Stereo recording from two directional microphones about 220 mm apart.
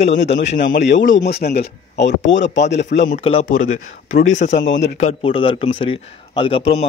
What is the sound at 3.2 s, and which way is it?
Speech, 25° left (ahead or behind).